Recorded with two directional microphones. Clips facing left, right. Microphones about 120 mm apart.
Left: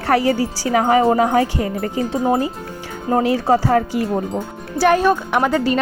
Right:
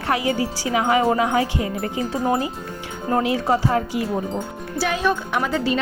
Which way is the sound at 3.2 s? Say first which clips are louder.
Left 6 dB; 35° left (ahead or behind).